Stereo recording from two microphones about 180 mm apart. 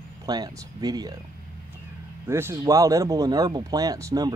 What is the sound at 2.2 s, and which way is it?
Speech, 15° right (ahead or behind).